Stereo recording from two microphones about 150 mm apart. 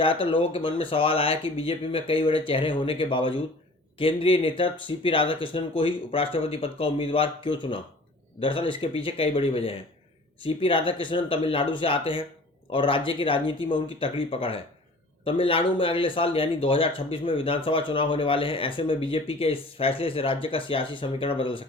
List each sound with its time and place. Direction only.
0.0 s speech: 35° left (ahead or behind)